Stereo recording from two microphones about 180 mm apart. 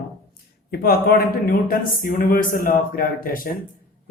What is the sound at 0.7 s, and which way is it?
A man's voice, 55° left (ahead or behind).